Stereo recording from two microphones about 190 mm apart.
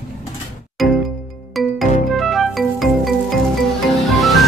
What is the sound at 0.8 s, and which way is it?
Music, centre (ahead or behind).